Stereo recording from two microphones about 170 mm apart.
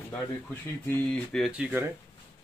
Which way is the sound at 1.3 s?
5° right (ahead or behind).